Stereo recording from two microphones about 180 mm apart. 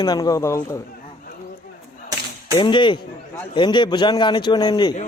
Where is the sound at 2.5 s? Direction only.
25° left (ahead or behind).